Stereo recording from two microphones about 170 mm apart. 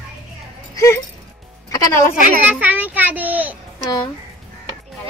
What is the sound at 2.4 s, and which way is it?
A child's voice, 10° right (ahead or behind).